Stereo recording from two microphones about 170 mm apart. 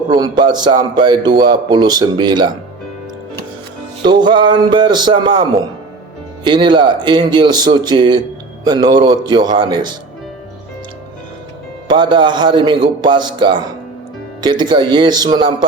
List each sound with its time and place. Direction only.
0.1 s a man's voice: 25° right (ahead or behind)
4.0 s a man's voice: 25° right (ahead or behind)
11.9 s a man's voice: 25° right (ahead or behind)